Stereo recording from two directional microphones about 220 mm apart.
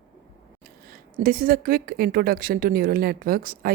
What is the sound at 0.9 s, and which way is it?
Speech, 40° right (ahead or behind).